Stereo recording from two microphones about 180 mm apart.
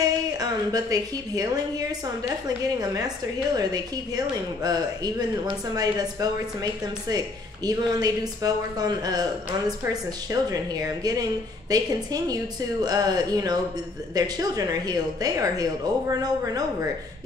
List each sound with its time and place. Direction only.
0.0 s a woman's voice: 20° right (ahead or behind)
10.3 s a woman's voice: 20° right (ahead or behind)